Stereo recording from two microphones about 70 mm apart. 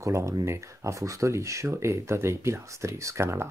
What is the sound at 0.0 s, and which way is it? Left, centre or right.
Speech, right.